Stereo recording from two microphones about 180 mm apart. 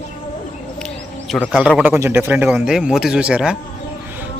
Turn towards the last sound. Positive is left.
turn(degrees=-5)  # may be behind; listen again after turning